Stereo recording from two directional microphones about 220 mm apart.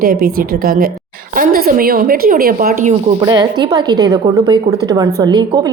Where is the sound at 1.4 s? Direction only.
40° right (ahead or behind).